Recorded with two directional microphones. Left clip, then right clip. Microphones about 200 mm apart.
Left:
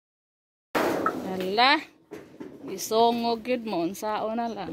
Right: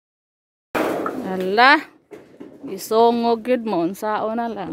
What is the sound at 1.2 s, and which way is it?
Speech, 25° right (ahead or behind).